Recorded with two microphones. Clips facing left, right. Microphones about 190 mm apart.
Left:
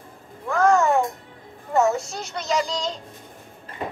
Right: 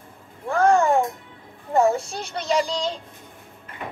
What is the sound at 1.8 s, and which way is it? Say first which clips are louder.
Music: right 1 dB; 30° right (ahead or behind).